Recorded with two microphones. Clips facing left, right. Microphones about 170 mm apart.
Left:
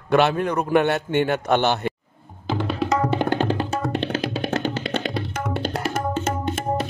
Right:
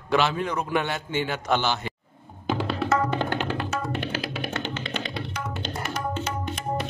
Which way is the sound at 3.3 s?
35° left (ahead or behind).